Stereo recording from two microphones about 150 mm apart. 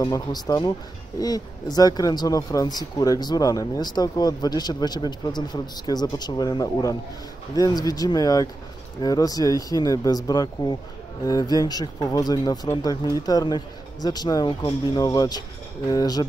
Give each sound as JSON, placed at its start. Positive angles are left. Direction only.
{"t": 0.0, "sound": "speech", "side_deg": 25}